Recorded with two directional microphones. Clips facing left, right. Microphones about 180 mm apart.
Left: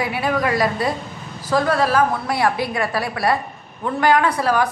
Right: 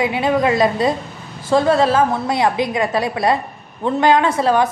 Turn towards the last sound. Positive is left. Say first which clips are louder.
# right 3 dB
turn(degrees=-25)  # may be behind; listen again after turning